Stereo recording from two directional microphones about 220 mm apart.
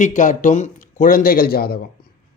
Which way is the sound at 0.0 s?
35° left (ahead or behind).